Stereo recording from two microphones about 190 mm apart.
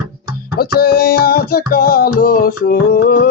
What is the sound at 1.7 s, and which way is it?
Music, 50° left (ahead or behind).